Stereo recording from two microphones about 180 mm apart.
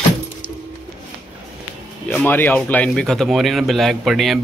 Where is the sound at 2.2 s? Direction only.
10° left (ahead or behind).